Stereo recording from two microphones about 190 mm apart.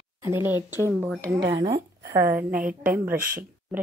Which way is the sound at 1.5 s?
25° right (ahead or behind).